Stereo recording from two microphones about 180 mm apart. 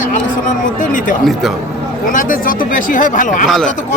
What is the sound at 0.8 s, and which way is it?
Speech, 45° left (ahead or behind).